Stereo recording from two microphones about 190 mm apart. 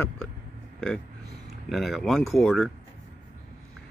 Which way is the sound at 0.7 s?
5° left (ahead or behind).